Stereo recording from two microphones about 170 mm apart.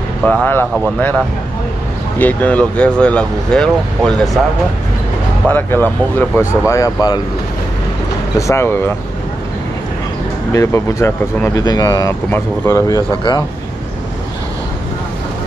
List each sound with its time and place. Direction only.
0.2 s speech: 10° left (ahead or behind)
2.1 s speech: 10° left (ahead or behind)
5.5 s speech: 10° left (ahead or behind)
8.4 s speech: 15° left (ahead or behind)
10.5 s speech: 15° left (ahead or behind)